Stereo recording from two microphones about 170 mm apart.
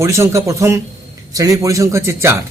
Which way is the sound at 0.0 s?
15° right (ahead or behind).